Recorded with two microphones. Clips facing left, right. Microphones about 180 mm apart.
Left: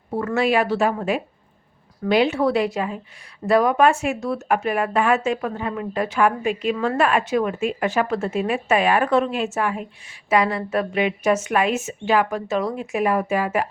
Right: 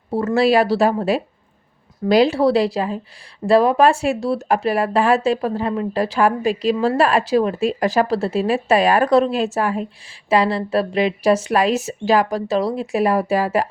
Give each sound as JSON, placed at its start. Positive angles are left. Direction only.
{"t": 0.1, "sound": "speech", "side_deg": -30}